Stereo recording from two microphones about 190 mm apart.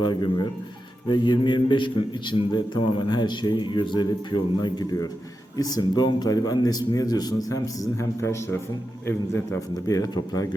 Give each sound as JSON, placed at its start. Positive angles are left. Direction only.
{"t": 0.0, "sound": "a man's voice", "side_deg": 25}